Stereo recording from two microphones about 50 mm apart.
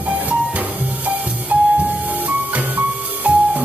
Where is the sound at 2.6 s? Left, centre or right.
Right.